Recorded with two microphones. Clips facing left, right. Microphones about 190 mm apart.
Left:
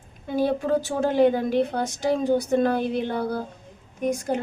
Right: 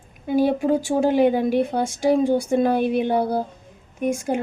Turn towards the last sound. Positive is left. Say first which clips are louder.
# right 2 dB
turn(degrees=-10)  # may be behind; listen again after turning